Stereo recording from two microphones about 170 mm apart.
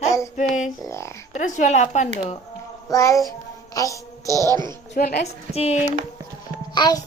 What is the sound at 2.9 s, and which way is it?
A child's voice, 20° left (ahead or behind).